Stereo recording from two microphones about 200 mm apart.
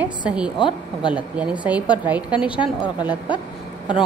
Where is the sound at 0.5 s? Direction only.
25° left (ahead or behind).